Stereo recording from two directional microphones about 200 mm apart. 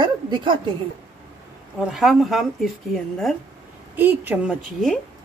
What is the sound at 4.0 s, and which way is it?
Speech, 10° right (ahead or behind).